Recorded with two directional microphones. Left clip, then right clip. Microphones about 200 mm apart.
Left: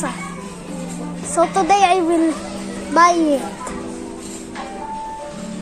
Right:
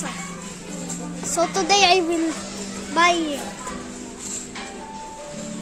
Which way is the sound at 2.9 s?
25° left (ahead or behind).